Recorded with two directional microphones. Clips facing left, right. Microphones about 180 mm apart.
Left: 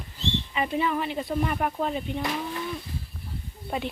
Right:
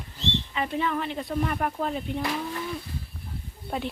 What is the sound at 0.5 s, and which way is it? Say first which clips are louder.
Speech: left 2 dB; 10° left (ahead or behind).